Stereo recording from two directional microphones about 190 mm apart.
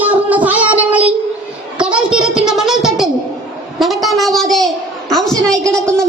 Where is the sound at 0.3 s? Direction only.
10° right (ahead or behind).